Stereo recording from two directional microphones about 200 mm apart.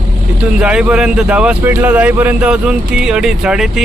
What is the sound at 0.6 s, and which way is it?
Speech, 5° right (ahead or behind).